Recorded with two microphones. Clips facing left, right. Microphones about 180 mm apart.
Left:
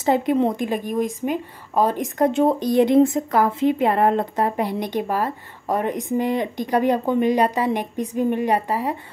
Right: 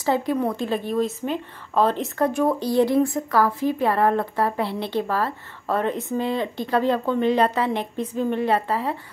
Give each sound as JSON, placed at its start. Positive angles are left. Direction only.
{"t": 0.0, "sound": "a woman's voice", "side_deg": 20}